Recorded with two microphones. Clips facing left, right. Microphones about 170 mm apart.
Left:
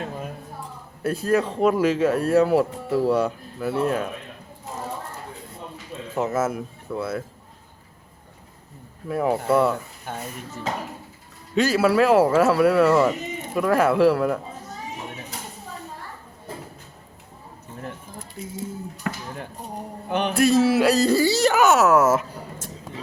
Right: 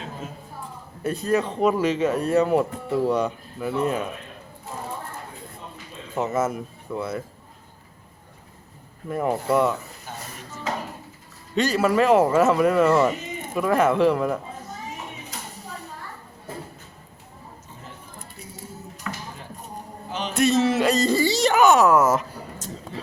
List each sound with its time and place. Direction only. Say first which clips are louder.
1.0 s speech: left 1 dB; 5° left (ahead or behind)
6.1 s speech: even; centre (ahead or behind)
9.0 s speech: left 2 dB; centre (ahead or behind)
10.1 s dishes: left 5 dB; 60° left (ahead or behind)
11.5 s speech: left 2 dB; 5° left (ahead or behind)
19.1 s a sound: left 4 dB; 55° left (ahead or behind)
20.1 s a man's voice: left 6 dB; 60° left (ahead or behind)
20.4 s speech: left 2 dB; 5° left (ahead or behind)